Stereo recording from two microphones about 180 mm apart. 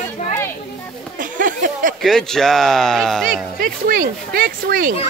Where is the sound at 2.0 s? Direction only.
5° left (ahead or behind).